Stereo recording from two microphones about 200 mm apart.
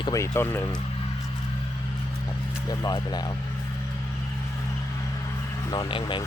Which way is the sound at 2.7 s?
20° left (ahead or behind).